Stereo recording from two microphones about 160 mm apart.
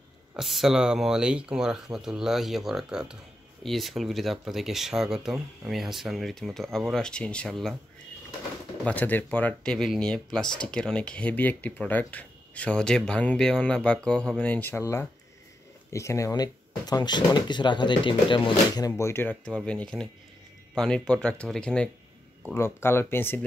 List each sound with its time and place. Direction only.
0.4 s speech: centre (ahead or behind)
8.8 s speech: 10° left (ahead or behind)